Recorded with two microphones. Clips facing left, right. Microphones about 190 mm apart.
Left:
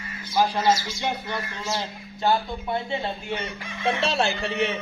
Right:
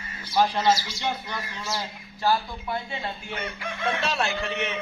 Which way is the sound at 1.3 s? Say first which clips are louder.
Left 3 dB; 20° left (ahead or behind).